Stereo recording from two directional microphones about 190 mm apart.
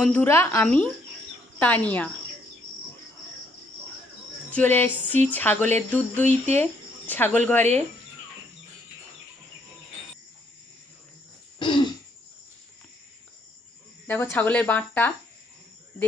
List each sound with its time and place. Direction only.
0.0 s speech: 10° left (ahead or behind)
4.5 s speech: 10° left (ahead or behind)
11.6 s throat clearing: 25° left (ahead or behind)
14.0 s speech: 10° left (ahead or behind)